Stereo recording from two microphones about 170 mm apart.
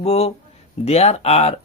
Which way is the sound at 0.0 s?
40° left (ahead or behind).